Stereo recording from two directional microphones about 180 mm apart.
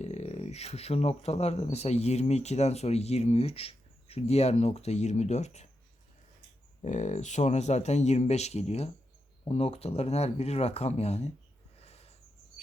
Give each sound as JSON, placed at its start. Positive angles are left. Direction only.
{"t": 0.0, "sound": "speech", "side_deg": 35}
{"t": 6.8, "sound": "speech", "side_deg": 40}
{"t": 11.8, "sound": "a sound", "side_deg": 35}